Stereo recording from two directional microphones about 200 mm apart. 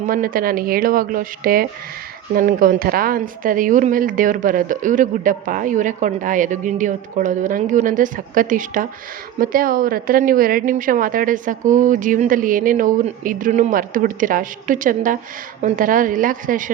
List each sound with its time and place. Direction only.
0.0 s a woman's voice: 45° right (ahead or behind)